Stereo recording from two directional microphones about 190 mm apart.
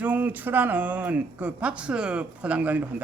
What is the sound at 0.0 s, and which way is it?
Speech, 10° right (ahead or behind).